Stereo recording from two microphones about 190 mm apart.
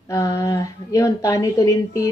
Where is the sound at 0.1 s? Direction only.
15° left (ahead or behind).